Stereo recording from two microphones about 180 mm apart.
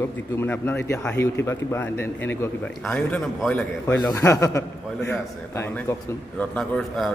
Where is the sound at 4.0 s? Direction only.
15° left (ahead or behind).